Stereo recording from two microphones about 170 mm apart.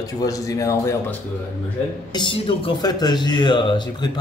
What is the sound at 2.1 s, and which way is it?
Speech, 30° left (ahead or behind).